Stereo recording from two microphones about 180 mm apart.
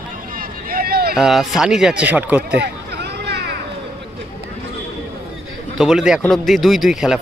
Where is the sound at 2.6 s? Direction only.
70° right (ahead or behind).